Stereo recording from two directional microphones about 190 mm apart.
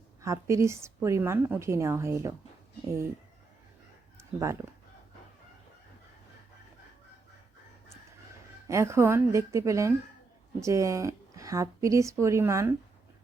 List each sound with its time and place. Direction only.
0.2 s a woman's voice: 15° right (ahead or behind)
4.2 s a sound: 15° right (ahead or behind)
8.6 s a woman's voice: 15° right (ahead or behind)